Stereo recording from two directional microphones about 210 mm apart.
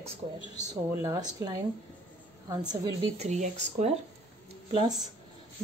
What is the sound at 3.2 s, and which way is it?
Speech, 35° right (ahead or behind).